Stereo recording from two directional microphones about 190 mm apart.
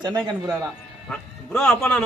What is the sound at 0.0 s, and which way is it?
Speech, 20° right (ahead or behind).